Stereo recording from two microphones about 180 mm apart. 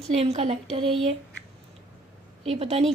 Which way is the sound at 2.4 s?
35° right (ahead or behind).